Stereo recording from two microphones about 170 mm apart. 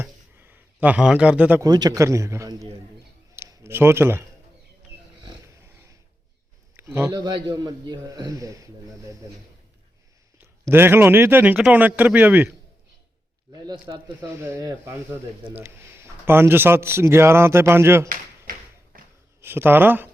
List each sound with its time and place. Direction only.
0.0 s a sound: 10° right (ahead or behind)
1.6 s a man's voice: 25° right (ahead or behind)
3.3 s a sound: 15° right (ahead or behind)
6.9 s speech: 15° right (ahead or behind)
7.2 s a man's voice: 25° right (ahead or behind)
10.7 s speech: 15° right (ahead or behind)
13.7 s a man's voice: 25° right (ahead or behind)
14.2 s speech: 15° right (ahead or behind)
18.9 s a sound: 55° right (ahead or behind)
19.4 s speech: 15° right (ahead or behind)